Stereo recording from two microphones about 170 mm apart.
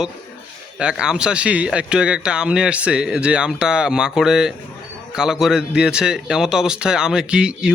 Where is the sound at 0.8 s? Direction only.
5° right (ahead or behind).